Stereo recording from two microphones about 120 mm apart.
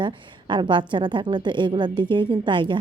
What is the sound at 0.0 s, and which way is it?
A woman's voice, 40° right (ahead or behind).